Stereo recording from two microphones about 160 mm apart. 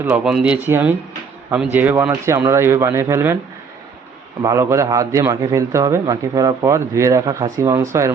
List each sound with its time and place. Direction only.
0.0 s speech: 10° right (ahead or behind)
4.4 s a man's voice: 20° right (ahead or behind)